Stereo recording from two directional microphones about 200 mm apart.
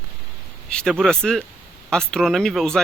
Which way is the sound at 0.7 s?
5° left (ahead or behind).